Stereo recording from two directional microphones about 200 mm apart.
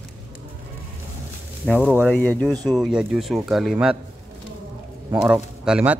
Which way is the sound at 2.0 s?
5° left (ahead or behind).